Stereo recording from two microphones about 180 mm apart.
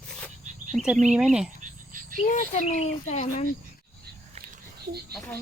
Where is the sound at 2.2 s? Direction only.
45° left (ahead or behind).